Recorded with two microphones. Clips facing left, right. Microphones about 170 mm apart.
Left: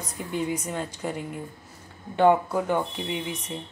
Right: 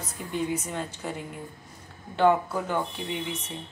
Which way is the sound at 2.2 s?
10° left (ahead or behind).